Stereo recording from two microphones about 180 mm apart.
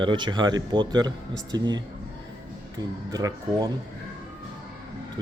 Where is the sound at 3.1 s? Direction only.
20° right (ahead or behind).